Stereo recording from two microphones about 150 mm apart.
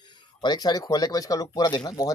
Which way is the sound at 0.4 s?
30° left (ahead or behind).